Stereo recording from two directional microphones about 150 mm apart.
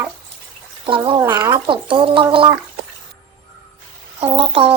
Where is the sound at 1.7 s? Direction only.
35° right (ahead or behind).